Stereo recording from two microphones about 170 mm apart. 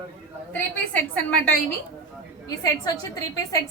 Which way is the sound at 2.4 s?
20° left (ahead or behind).